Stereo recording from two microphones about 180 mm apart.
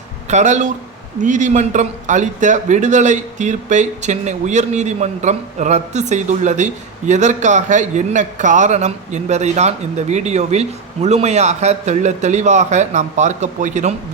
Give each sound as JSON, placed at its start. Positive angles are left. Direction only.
{"t": 0.3, "sound": "a man's voice", "side_deg": -40}